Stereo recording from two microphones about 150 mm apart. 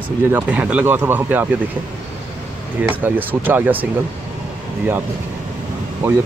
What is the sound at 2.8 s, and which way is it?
Speech, 10° right (ahead or behind).